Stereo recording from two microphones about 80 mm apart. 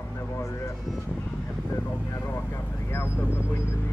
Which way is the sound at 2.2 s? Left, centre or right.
Left.